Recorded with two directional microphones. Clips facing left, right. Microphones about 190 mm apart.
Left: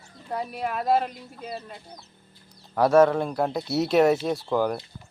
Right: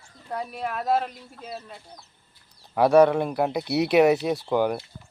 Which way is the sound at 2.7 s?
10° right (ahead or behind).